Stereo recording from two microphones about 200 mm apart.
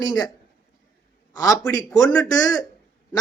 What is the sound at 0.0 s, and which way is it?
Speech, 20° left (ahead or behind).